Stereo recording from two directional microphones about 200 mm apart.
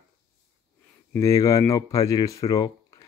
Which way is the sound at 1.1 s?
15° left (ahead or behind).